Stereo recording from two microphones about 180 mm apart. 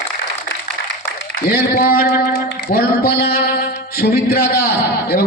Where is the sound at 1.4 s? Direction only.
55° left (ahead or behind).